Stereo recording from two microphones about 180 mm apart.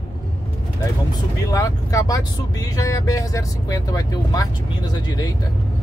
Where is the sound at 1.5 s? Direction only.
20° left (ahead or behind).